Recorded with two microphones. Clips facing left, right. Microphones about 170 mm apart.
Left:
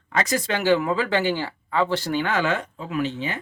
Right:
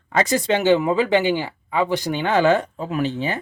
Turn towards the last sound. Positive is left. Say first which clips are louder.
# right 3 dB
turn(degrees=-35)  # may be behind; listen again after turning